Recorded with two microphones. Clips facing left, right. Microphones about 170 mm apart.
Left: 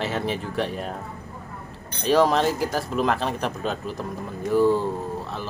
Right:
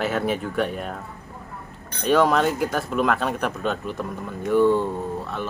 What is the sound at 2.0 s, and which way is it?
Speech, 35° left (ahead or behind).